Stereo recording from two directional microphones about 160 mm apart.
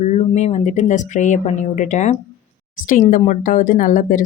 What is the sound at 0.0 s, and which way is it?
Speech, 45° left (ahead or behind).